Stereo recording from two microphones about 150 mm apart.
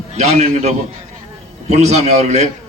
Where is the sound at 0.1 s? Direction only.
45° right (ahead or behind).